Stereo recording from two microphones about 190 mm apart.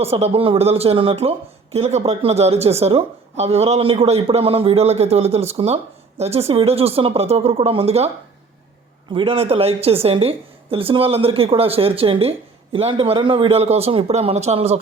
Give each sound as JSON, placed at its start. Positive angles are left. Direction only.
{"t": 0.0, "sound": "speech", "side_deg": -30}
{"t": 9.1, "sound": "a woman's voice", "side_deg": -30}